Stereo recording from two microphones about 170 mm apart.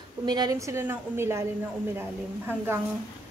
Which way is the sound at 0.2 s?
25° right (ahead or behind).